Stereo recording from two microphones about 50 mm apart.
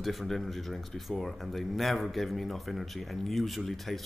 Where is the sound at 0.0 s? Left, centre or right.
Centre.